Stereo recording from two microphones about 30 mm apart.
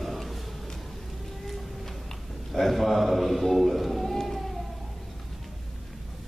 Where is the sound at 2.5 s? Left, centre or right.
Centre.